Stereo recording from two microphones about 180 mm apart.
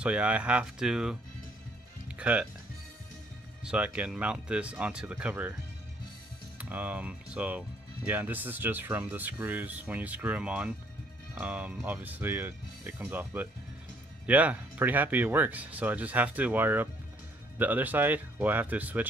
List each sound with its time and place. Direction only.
0.0 s speech: 5° right (ahead or behind)
2.1 s speech: 5° right (ahead or behind)
3.6 s speech: 5° right (ahead or behind)
6.6 s speech: 5° right (ahead or behind)